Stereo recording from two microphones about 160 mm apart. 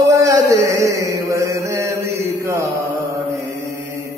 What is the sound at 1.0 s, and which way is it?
Mantra, 20° right (ahead or behind).